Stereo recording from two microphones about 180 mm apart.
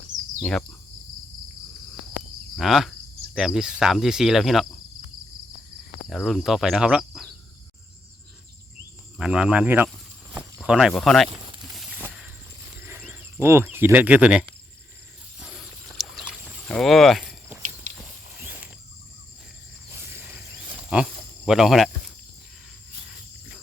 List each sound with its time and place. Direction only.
2.6 s speech: centre (ahead or behind)
6.1 s speech: centre (ahead or behind)
9.1 s speech: 5° right (ahead or behind)
11.7 s a sound: 5° right (ahead or behind)
16.0 s rowboat: centre (ahead or behind)
19.9 s a sound: 10° right (ahead or behind)